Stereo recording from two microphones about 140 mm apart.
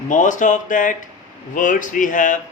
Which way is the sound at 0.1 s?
65° left (ahead or behind).